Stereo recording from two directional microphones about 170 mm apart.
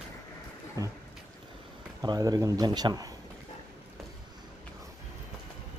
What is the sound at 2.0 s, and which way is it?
Speech, 20° right (ahead or behind).